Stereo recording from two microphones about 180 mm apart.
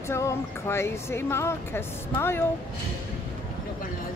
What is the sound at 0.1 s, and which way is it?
A woman's voice, 15° left (ahead or behind).